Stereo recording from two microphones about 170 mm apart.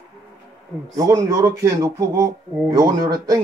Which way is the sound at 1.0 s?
20° right (ahead or behind).